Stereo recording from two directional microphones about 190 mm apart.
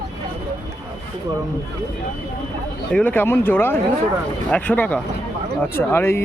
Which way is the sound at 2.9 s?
10° left (ahead or behind).